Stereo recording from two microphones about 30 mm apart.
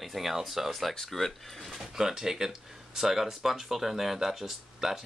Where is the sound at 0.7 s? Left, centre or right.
Centre.